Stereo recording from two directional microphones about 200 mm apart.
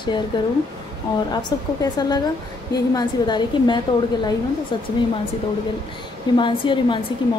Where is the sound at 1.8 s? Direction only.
20° left (ahead or behind).